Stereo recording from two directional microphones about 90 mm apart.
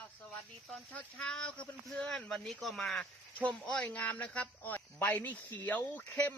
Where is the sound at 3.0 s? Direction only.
10° left (ahead or behind).